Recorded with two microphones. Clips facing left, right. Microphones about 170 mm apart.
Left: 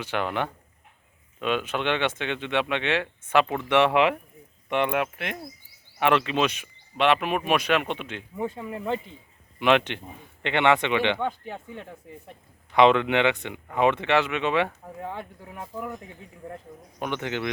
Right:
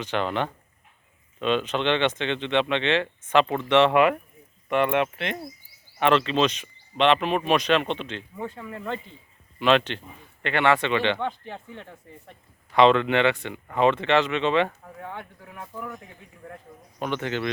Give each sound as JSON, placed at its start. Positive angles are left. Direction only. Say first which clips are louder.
{"t": 0.0, "sound": "speech", "louder": "right 1 dB", "side_deg": 10}
{"t": 15.1, "sound": "speech", "louder": "left 2 dB", "side_deg": 30}
{"t": 17.0, "sound": "speech", "louder": "right 1 dB", "side_deg": 15}